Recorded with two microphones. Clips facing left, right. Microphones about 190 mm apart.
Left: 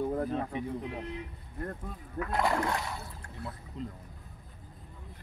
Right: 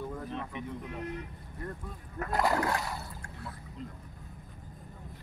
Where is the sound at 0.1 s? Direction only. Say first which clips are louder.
Left 7 dB; 45° left (ahead or behind).